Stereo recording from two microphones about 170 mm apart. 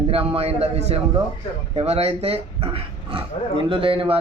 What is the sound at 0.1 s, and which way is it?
Speech, 35° right (ahead or behind).